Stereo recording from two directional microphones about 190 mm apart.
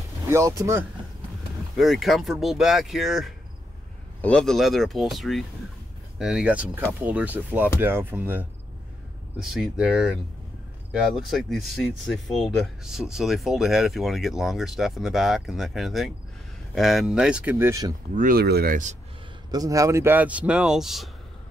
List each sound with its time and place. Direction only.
0.3 s speech: 15° right (ahead or behind)
1.8 s speech: centre (ahead or behind)
18.1 s speech: 50° right (ahead or behind)
19.5 s speech: 20° right (ahead or behind); by 21.1 s centre (ahead or behind)